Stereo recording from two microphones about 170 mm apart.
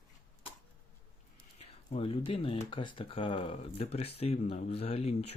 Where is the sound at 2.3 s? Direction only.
30° left (ahead or behind).